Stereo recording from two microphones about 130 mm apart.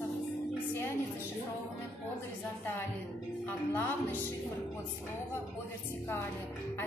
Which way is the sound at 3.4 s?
15° left (ahead or behind).